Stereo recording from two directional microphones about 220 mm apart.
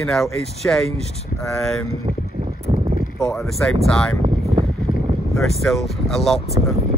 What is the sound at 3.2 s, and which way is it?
Speech, centre (ahead or behind).